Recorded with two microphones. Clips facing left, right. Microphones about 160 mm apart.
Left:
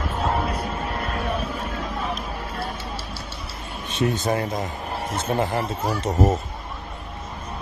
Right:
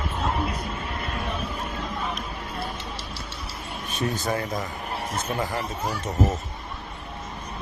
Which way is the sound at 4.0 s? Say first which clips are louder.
Left 4 dB; 25° left (ahead or behind).